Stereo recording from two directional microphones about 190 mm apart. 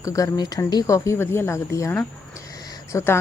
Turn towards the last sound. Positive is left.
turn(degrees=15)  # may be behind; listen again after turning